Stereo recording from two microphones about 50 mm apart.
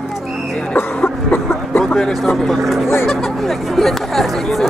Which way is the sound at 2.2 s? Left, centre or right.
Centre.